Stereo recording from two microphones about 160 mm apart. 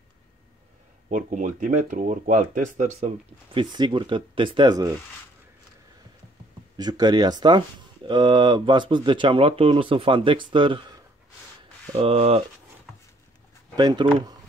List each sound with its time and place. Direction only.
1.0 s speech: 55° right (ahead or behind)
3.5 s speech: 30° right (ahead or behind)
6.8 s speech: 25° right (ahead or behind)
11.9 s speech: 35° right (ahead or behind)
13.7 s speech: 25° right (ahead or behind)